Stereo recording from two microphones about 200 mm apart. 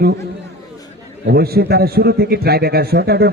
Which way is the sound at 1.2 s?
50° right (ahead or behind).